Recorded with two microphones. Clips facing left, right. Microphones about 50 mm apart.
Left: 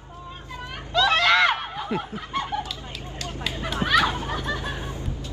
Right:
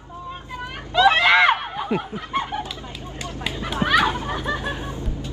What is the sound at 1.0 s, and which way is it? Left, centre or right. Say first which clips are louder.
Snicker: right 4 dB; centre.